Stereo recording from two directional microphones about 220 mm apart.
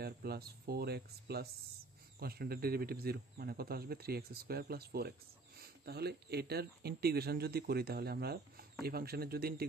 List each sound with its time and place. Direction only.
0.0 s speech: 45° right (ahead or behind)